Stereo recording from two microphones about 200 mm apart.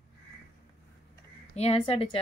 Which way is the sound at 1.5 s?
30° left (ahead or behind).